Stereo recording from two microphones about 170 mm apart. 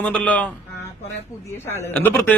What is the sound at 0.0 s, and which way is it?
Speech, 10° left (ahead or behind).